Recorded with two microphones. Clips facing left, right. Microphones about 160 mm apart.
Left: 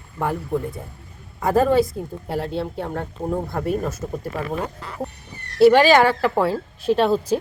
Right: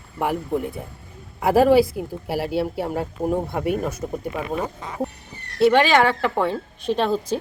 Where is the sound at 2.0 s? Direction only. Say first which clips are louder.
Right 1 dB; 5° right (ahead or behind).